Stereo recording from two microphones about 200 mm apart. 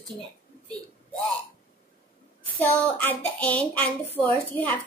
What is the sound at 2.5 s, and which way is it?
Child singing, 10° left (ahead or behind).